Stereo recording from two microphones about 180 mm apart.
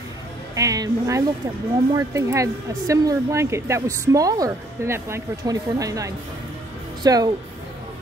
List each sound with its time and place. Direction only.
0.6 s speech: 20° right (ahead or behind)